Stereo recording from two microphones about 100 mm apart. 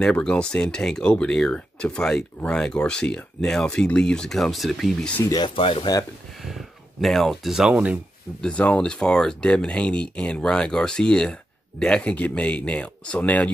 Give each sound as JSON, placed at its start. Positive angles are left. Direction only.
{"t": 0.1, "sound": "speech", "side_deg": 10}
{"t": 5.6, "sound": "speech", "side_deg": 60}
{"t": 6.4, "sound": "speech", "side_deg": 0}
{"t": 8.4, "sound": "speech", "side_deg": 10}